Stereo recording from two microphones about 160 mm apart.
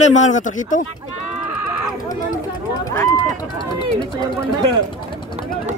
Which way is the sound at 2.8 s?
20° left (ahead or behind).